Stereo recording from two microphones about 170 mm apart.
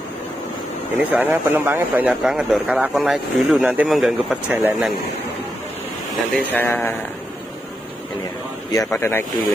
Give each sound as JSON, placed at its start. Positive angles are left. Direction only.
{"t": 1.0, "sound": "speech", "side_deg": -10}
{"t": 6.5, "sound": "speech", "side_deg": 10}
{"t": 8.7, "sound": "speech", "side_deg": 15}